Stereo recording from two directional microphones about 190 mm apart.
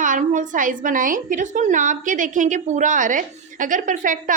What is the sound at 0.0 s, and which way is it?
A woman's voice, 40° right (ahead or behind).